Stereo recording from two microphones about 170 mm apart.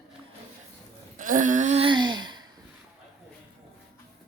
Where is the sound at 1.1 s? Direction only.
50° right (ahead or behind); by 2.4 s 25° right (ahead or behind).